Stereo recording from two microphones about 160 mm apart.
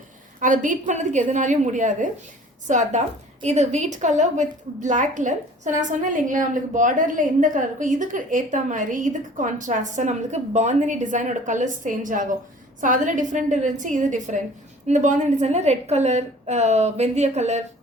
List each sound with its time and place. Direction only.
0.3 s a woman's voice: 55° right (ahead or behind)